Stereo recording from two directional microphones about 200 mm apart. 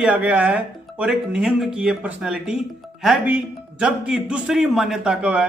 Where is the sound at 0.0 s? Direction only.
5° right (ahead or behind).